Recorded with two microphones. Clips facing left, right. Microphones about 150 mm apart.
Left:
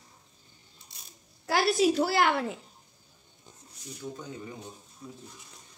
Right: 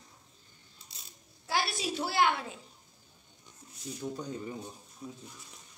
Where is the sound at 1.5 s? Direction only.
75° left (ahead or behind).